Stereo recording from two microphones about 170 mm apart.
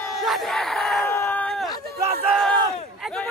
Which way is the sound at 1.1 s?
10° left (ahead or behind).